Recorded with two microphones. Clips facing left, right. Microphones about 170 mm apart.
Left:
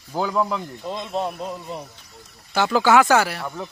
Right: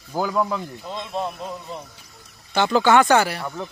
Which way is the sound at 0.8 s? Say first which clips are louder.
Left 3 dB; 15° left (ahead or behind).